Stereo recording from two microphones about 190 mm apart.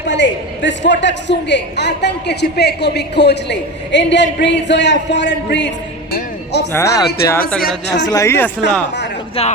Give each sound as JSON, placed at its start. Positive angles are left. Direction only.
{"t": 0.1, "sound": "a man's voice", "side_deg": 70}
{"t": 6.1, "sound": "music", "side_deg": 60}
{"t": 6.7, "sound": "speech", "side_deg": 15}
{"t": 9.4, "sound": "speech", "side_deg": 30}